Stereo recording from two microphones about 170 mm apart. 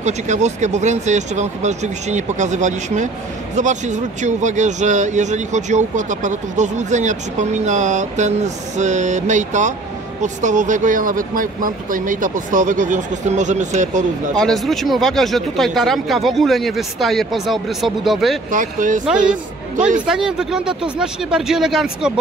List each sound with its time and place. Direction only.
0.0 s speech: 45° right (ahead or behind)
14.4 s speech: centre (ahead or behind)
18.5 s speech: 50° right (ahead or behind)
20.1 s speech: 5° right (ahead or behind)